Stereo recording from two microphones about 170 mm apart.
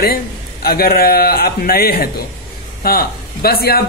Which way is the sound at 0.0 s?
65° left (ahead or behind).